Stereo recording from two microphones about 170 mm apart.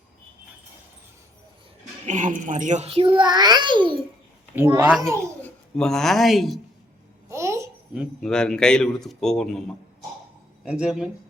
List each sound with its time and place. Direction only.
2.0 s a woman's voice: 50° right (ahead or behind); by 3.9 s 30° right (ahead or behind)
4.9 s a child's voice: 15° right (ahead or behind)
5.4 s speech: 5° left (ahead or behind)
7.3 s babbling: 15° right (ahead or behind)
7.9 s a man's voice: 5° left (ahead or behind)